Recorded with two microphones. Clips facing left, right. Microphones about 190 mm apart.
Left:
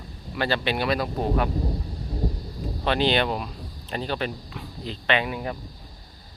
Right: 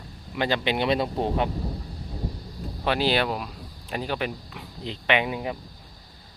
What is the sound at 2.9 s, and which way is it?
Speech, 5° right (ahead or behind).